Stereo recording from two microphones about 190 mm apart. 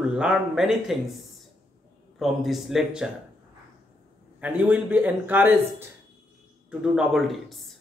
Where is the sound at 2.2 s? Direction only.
Centre (ahead or behind).